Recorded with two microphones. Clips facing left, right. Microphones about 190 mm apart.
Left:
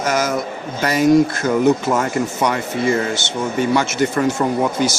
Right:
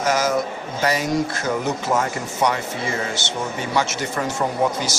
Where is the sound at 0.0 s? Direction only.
50° left (ahead or behind).